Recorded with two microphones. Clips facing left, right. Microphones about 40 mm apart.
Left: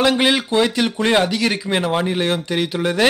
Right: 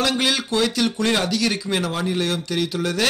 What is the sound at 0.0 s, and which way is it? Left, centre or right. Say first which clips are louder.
Speech: left 5 dB; left.